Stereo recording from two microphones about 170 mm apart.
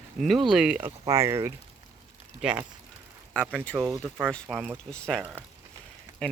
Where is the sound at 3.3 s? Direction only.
5° left (ahead or behind).